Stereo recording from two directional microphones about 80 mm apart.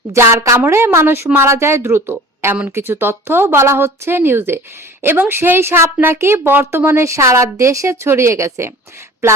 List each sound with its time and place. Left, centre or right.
0.1 s speech: right